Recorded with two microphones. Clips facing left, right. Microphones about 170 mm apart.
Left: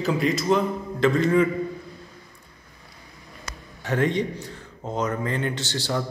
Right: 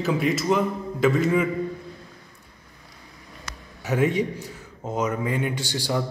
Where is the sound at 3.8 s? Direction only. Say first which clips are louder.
Right 1 dB; 5° right (ahead or behind).